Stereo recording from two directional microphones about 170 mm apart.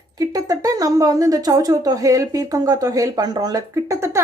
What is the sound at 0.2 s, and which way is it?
Speech, 20° right (ahead or behind).